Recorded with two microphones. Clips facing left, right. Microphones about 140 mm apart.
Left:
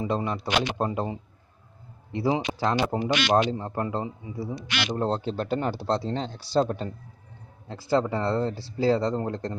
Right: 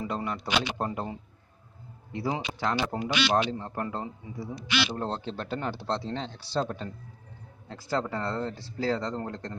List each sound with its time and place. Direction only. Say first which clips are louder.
0.0 s speech: left 5 dB; 25° left (ahead or behind)
2.1 s speech: left 6 dB; 25° left (ahead or behind)
5.1 s speech: left 6 dB; 40° left (ahead or behind)